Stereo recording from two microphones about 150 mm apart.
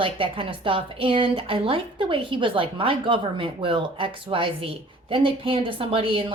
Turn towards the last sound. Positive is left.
turn(degrees=-35)  # may be behind; listen again after turning